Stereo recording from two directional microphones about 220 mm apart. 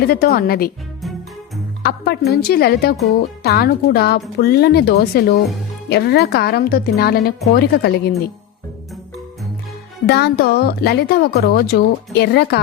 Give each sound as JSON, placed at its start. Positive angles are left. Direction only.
{"t": 0.0, "sound": "speech", "side_deg": 45}
{"t": 1.8, "sound": "speech", "side_deg": 45}
{"t": 10.1, "sound": "speech", "side_deg": 50}